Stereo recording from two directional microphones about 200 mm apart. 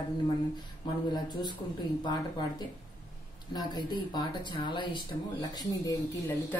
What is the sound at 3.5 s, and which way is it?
Speech, 20° left (ahead or behind).